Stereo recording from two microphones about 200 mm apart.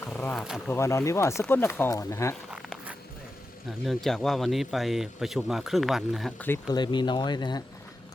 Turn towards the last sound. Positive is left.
turn(degrees=20)  # may be behind; listen again after turning